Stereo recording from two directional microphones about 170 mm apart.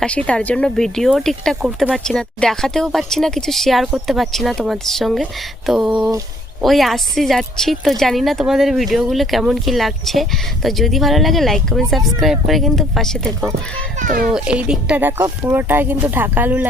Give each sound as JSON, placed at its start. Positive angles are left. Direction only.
{"t": 0.0, "sound": "speech", "side_deg": 5}
{"t": 14.0, "sound": "a child's voice", "side_deg": -55}
{"t": 14.3, "sound": "speech", "side_deg": -5}